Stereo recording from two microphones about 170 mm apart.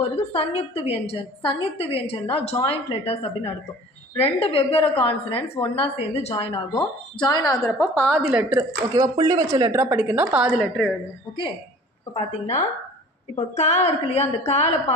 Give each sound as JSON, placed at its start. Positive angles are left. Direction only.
{"t": 0.3, "sound": "a woman's voice", "side_deg": 35}
{"t": 8.3, "sound": "a woman's voice", "side_deg": -5}
{"t": 9.0, "sound": "a woman's voice", "side_deg": -25}
{"t": 10.5, "sound": "a woman's voice", "side_deg": 0}
{"t": 12.1, "sound": "a woman's voice", "side_deg": 40}